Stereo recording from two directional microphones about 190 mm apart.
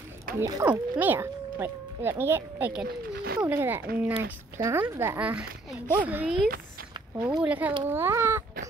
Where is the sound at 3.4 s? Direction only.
10° right (ahead or behind).